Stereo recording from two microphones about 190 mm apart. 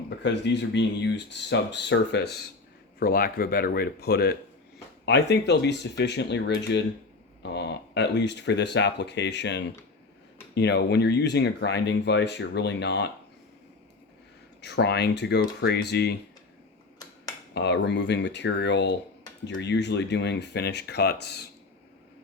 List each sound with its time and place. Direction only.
0.2 s speech: 65° left (ahead or behind)
3.0 s speech: 50° left (ahead or behind)
14.6 s speech: 60° left (ahead or behind)
17.5 s speech: 65° left (ahead or behind)